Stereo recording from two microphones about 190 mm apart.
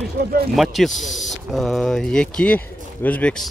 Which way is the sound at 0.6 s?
Centre (ahead or behind).